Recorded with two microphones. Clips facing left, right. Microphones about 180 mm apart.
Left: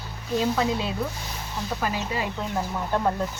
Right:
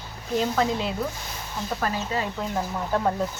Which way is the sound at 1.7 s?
10° left (ahead or behind).